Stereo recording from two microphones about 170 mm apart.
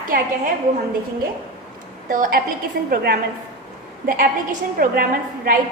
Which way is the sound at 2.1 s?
55° right (ahead or behind).